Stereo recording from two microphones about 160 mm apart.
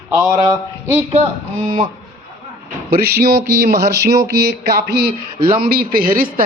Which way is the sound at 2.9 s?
75° right (ahead or behind).